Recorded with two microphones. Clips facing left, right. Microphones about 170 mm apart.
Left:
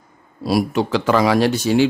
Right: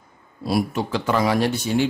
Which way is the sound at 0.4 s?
90° left.